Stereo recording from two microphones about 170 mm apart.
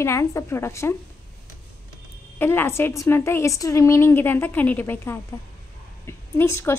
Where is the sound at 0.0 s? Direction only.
15° left (ahead or behind).